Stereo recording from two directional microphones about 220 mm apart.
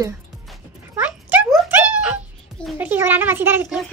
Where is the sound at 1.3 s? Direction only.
5° right (ahead or behind).